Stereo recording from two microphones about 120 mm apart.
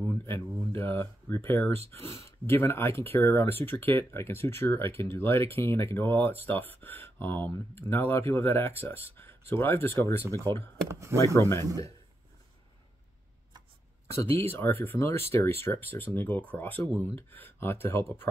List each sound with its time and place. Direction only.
0.0 s speech: 20° left (ahead or behind)
10.9 s speech: 25° right (ahead or behind)
11.1 s speech: 25° left (ahead or behind)
14.3 s speech: 20° left (ahead or behind)